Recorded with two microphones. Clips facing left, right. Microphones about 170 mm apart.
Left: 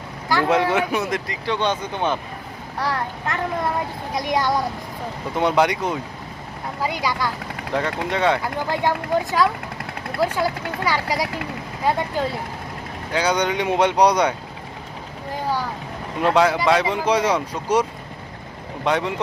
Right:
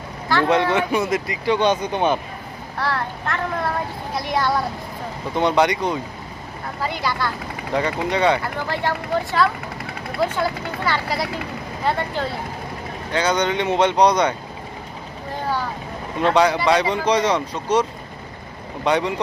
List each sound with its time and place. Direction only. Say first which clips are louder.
0.3 s speech: right 1 dB; 10° left (ahead or behind)
1.1 s speech: right 4 dB; 10° right (ahead or behind)
2.7 s speech: even; 15° left (ahead or behind)
7.7 s speech: right 2 dB; centre (ahead or behind)
8.7 s speech: left 2 dB; 15° left (ahead or behind)
13.1 s speech: right 1 dB; 10° left (ahead or behind)
16.2 s speech: even; 5° left (ahead or behind)
18.9 s speech: right 2 dB; centre (ahead or behind)